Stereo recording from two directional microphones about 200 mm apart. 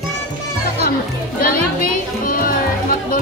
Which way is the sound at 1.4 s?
45° left (ahead or behind).